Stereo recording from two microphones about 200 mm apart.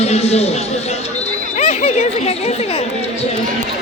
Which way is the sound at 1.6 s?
35° left (ahead or behind).